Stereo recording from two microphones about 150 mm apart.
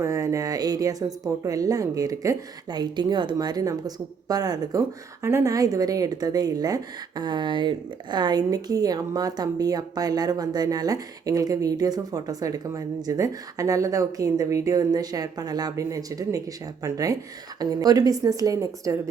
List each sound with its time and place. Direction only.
0.0 s speech: 20° right (ahead or behind)